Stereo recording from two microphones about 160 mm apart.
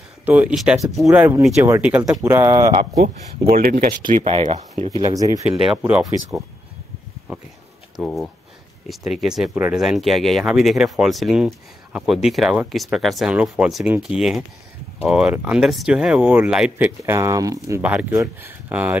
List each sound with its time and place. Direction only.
0.2 s speech: 10° right (ahead or behind)
1.1 s speech: 10° right (ahead or behind)
3.5 s speech: 65° right (ahead or behind)
4.3 s speech: 40° right (ahead or behind)
5.1 s speech: 20° right (ahead or behind)
5.6 s speech: 5° right (ahead or behind)
7.3 s speech: 10° right (ahead or behind)